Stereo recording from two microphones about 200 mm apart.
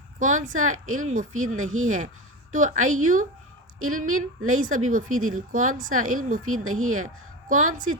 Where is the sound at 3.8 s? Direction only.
90° right.